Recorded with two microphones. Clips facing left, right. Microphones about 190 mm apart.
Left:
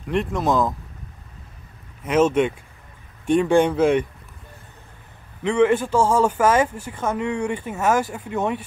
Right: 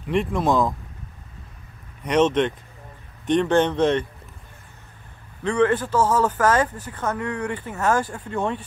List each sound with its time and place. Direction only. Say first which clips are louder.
0.1 s speech: even; centre (ahead or behind)
2.0 s speech: left 1 dB; 5° left (ahead or behind)
5.5 s speech: left 2 dB; 10° left (ahead or behind)